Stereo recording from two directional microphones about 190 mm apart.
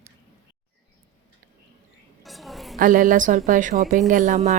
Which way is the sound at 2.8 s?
45° right (ahead or behind).